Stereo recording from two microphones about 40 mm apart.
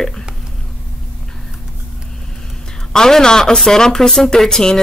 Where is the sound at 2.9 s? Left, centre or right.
Centre.